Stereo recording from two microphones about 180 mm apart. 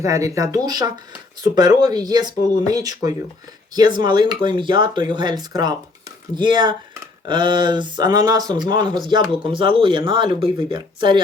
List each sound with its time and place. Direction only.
0.0 s speech: 15° right (ahead or behind)